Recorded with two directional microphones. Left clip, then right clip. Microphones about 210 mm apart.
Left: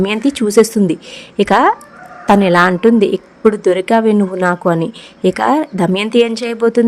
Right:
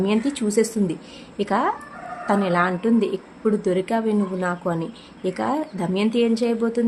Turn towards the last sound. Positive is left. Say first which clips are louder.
# left 9 dB
turn(degrees=40)  # may be behind; listen again after turning